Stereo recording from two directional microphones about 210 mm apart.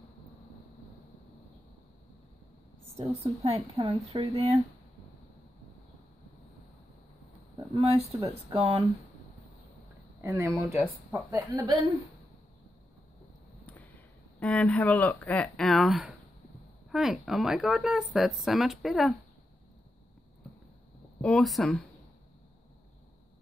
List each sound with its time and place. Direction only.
3.4 s a woman's voice: 30° right (ahead or behind)
7.7 s speech: 30° right (ahead or behind)
10.2 s speech: 15° right (ahead or behind)
14.4 s speech: 5° left (ahead or behind)
21.2 s speech: 5° left (ahead or behind)